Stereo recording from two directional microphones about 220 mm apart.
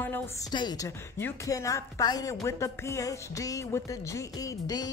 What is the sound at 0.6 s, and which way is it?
Music, 15° left (ahead or behind).